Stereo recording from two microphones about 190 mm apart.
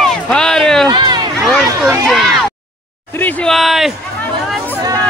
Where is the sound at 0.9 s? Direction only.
25° right (ahead or behind).